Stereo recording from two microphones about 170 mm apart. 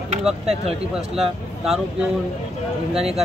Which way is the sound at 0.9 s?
Centre (ahead or behind).